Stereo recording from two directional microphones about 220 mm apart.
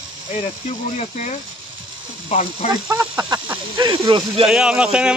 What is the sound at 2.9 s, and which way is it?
Speech, 15° right (ahead or behind).